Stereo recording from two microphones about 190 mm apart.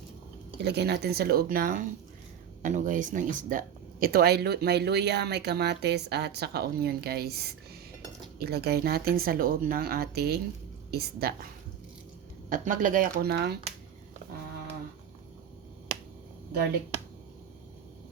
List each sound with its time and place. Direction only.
0.6 s speech: 60° right (ahead or behind)
8.4 s speech: 55° right (ahead or behind)
12.5 s speech: 45° right (ahead or behind)
13.3 s speech: 60° right (ahead or behind)